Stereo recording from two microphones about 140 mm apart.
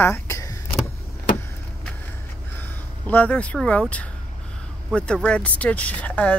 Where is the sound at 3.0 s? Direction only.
10° left (ahead or behind).